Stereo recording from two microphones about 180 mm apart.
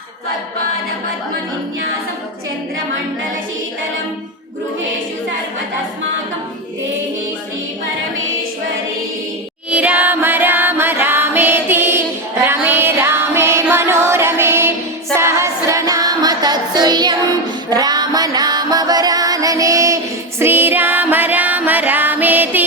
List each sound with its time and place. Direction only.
9.6 s singing: 5° right (ahead or behind)
12.5 s music: 10° right (ahead or behind)